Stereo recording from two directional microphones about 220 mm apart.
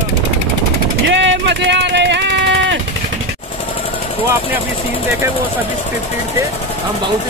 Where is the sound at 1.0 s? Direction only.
55° right (ahead or behind).